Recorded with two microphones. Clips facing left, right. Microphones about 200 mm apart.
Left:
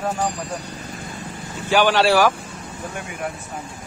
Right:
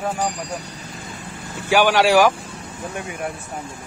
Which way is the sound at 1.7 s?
10° right (ahead or behind).